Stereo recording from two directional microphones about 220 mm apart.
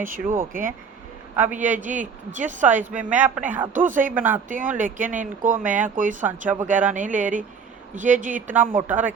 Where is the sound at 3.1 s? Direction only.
10° right (ahead or behind).